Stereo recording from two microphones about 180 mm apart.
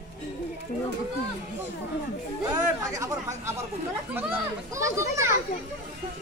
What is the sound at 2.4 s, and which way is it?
A child's voice, 20° right (ahead or behind).